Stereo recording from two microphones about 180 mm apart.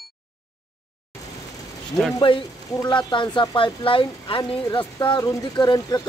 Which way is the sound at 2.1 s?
25° left (ahead or behind).